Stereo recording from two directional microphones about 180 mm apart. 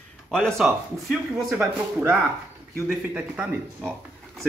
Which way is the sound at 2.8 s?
5° right (ahead or behind).